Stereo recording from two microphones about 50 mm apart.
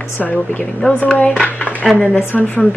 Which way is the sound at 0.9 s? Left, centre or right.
Left.